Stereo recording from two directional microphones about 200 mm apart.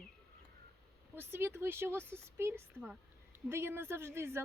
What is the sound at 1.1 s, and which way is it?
Speech, 10° right (ahead or behind).